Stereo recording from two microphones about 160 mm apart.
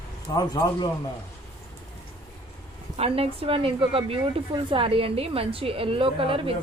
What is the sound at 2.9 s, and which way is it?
A woman's voice, 40° right (ahead or behind).